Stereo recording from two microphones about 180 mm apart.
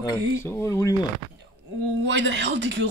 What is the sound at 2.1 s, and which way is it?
Speech, 90° right.